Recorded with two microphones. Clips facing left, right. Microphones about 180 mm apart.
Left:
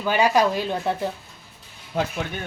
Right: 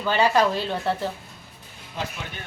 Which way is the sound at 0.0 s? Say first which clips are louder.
Left 1 dB; 15° left (ahead or behind).